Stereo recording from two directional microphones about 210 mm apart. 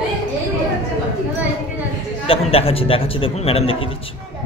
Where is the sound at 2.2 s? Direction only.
25° left (ahead or behind).